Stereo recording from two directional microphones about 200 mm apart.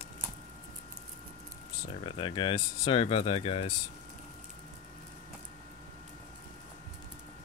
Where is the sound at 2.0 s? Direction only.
25° left (ahead or behind).